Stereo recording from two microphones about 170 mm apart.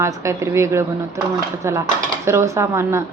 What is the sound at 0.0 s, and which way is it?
A woman's voice, 15° right (ahead or behind).